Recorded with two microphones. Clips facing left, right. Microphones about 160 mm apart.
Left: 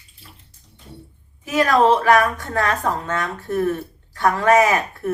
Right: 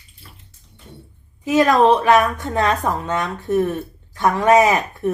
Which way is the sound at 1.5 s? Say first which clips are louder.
Right 2 dB; 20° right (ahead or behind).